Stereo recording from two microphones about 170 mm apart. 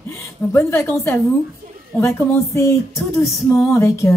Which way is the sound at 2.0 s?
15° left (ahead or behind).